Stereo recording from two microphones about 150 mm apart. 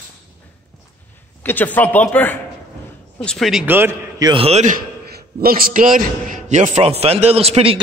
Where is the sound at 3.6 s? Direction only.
15° right (ahead or behind).